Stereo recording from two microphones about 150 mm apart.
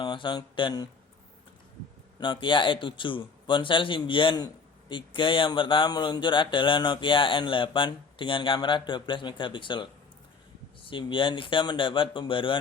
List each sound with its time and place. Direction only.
0.0 s speech: 30° left (ahead or behind)
2.1 s speech: 30° left (ahead or behind)
10.8 s speech: 35° left (ahead or behind)